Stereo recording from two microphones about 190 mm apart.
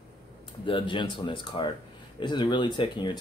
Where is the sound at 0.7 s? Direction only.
25° left (ahead or behind).